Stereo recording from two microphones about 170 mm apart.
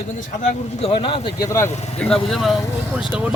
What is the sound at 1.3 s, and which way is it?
Speech, 20° left (ahead or behind).